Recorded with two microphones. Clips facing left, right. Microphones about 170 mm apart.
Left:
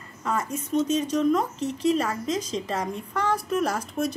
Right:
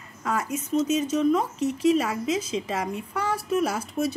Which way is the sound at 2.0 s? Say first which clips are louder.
Right 1 dB; 5° right (ahead or behind).